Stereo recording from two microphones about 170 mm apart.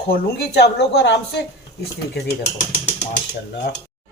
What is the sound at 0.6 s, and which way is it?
Speech, 80° left.